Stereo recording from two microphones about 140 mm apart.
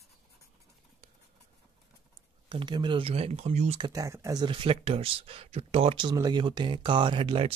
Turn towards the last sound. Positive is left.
turn(degrees=-40)  # may be behind; listen again after turning